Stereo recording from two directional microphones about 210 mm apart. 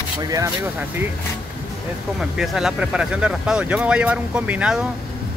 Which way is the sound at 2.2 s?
Centre (ahead or behind).